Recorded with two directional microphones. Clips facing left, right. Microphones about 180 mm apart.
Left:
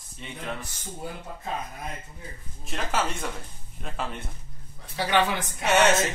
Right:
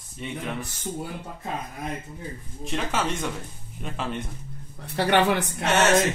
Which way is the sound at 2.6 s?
Centre (ahead or behind).